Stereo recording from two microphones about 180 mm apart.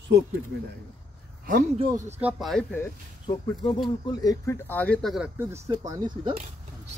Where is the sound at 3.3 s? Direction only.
30° left (ahead or behind); by 5.6 s 10° right (ahead or behind).